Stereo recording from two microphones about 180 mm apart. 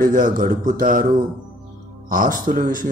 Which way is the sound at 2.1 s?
50° right (ahead or behind).